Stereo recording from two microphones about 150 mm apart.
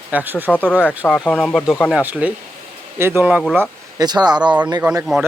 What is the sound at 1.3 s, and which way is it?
Speech, 5° left (ahead or behind).